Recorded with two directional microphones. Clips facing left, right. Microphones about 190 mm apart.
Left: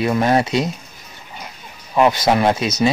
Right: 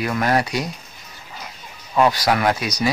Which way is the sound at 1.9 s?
20° left (ahead or behind).